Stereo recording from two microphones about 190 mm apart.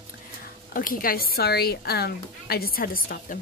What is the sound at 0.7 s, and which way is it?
A woman's voice, 50° left (ahead or behind).